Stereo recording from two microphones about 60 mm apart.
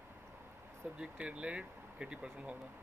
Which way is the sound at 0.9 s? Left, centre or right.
Centre.